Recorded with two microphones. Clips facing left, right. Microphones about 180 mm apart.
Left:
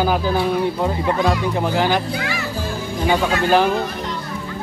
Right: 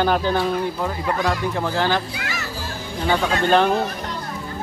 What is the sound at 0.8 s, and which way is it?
Speech, 20° left (ahead or behind).